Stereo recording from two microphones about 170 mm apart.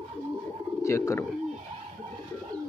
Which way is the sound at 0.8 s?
15° left (ahead or behind).